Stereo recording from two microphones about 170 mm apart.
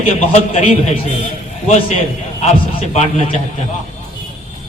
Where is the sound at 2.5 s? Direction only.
40° left (ahead or behind).